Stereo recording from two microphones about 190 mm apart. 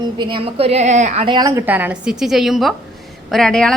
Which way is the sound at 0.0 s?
25° right (ahead or behind).